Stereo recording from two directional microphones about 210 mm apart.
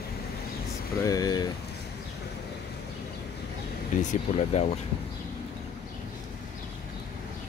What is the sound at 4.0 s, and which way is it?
Speech, 35° left (ahead or behind).